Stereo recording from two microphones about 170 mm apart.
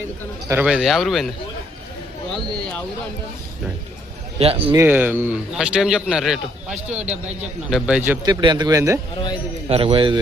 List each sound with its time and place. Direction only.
0.4 s a man's voice: 15° right (ahead or behind)
0.7 s a man's voice: centre (ahead or behind)
4.4 s a man's voice: 35° right (ahead or behind)
4.8 s a man's voice: 10° right (ahead or behind)
8.2 s speech: 25° right (ahead or behind)
9.1 s a man's voice: 25° left (ahead or behind)
9.6 s a man's voice: 35° right (ahead or behind)